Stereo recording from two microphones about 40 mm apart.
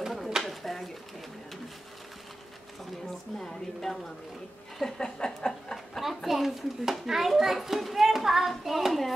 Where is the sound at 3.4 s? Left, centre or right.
Centre.